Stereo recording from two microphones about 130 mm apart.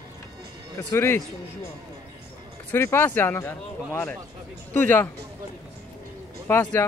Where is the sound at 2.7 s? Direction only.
20° left (ahead or behind).